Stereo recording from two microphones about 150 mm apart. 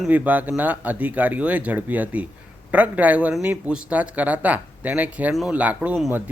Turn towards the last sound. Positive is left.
turn(degrees=-10)  # may be behind; listen again after turning